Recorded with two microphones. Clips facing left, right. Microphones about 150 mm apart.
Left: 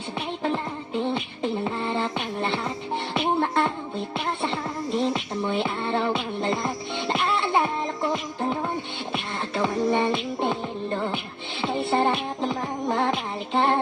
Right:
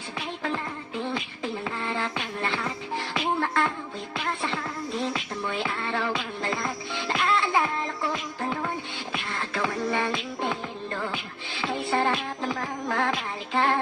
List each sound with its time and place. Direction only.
0.4 s music: 25° left (ahead or behind)
13.5 s child singing: 25° left (ahead or behind)